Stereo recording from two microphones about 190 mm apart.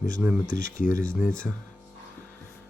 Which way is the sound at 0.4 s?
45° left (ahead or behind).